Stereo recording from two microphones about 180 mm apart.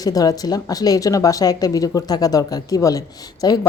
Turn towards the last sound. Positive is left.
turn(degrees=20)  # may be behind; listen again after turning